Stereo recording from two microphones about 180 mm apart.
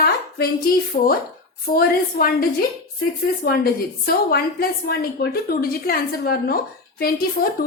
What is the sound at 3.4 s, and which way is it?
A woman's voice, 55° left (ahead or behind).